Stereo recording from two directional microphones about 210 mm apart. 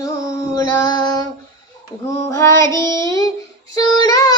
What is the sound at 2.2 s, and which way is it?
Child singing, 15° left (ahead or behind).